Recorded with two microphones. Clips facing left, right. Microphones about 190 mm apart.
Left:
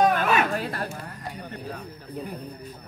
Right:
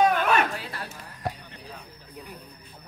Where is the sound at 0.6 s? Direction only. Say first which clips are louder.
Left 7 dB; 45° left (ahead or behind).